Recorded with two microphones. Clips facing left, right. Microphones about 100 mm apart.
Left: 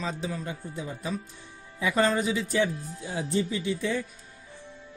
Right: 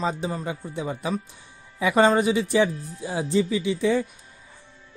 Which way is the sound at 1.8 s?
75° right (ahead or behind).